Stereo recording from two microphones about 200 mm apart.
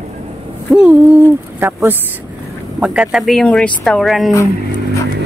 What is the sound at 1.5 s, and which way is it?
Speech, 10° right (ahead or behind).